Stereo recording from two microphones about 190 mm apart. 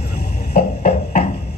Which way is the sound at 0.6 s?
55° left (ahead or behind).